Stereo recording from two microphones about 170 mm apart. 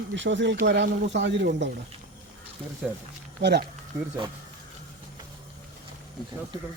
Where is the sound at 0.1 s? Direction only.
90° right.